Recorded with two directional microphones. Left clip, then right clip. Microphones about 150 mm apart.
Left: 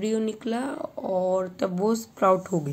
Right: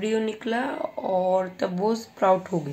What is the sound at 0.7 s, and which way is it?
Speech, 15° left (ahead or behind).